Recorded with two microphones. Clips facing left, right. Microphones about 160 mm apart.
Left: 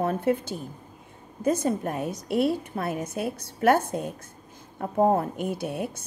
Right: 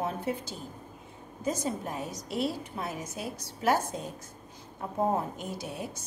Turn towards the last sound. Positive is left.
turn(degrees=60)  # may be behind; listen again after turning